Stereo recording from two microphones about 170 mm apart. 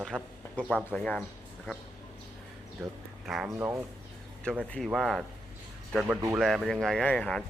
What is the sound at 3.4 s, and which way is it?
Speech, 15° right (ahead or behind).